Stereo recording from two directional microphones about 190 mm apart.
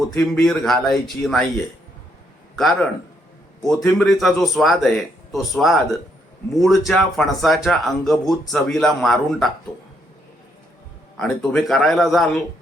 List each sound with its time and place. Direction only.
0.1 s speech: centre (ahead or behind)
3.6 s speech: centre (ahead or behind)
11.2 s speech: centre (ahead or behind)